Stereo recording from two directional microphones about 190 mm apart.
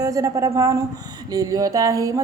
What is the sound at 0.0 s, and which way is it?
A woman's voice, 15° right (ahead or behind).